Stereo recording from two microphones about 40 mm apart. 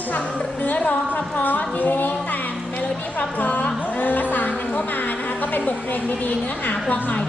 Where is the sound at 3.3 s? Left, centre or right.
Left.